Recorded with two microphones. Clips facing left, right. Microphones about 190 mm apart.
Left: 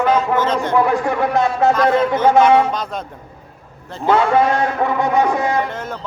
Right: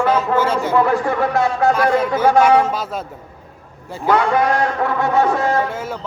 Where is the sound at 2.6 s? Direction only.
5° right (ahead or behind).